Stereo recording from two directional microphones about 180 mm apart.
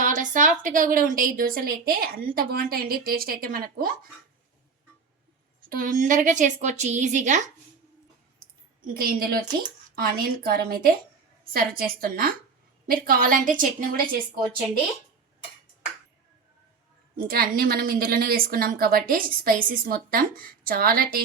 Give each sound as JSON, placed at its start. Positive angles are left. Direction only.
{"t": 0.0, "sound": "a woman's voice", "side_deg": -45}
{"t": 5.6, "sound": "a woman's voice", "side_deg": -50}
{"t": 8.9, "sound": "a woman's voice", "side_deg": -55}
{"t": 17.2, "sound": "a woman's voice", "side_deg": -55}